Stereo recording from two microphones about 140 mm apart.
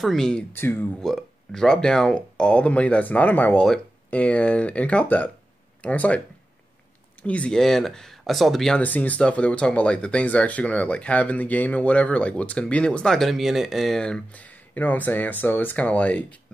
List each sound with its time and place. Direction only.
0.0 s speech: centre (ahead or behind)
0.5 s speech: 15° left (ahead or behind)
1.0 s speech: 5° left (ahead or behind)
7.2 s speech: 10° left (ahead or behind)